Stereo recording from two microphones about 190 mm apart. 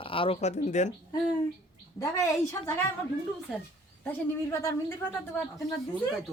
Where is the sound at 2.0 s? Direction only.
15° left (ahead or behind).